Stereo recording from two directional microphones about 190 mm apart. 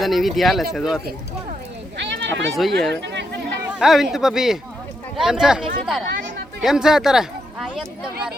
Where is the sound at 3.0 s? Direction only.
65° right (ahead or behind).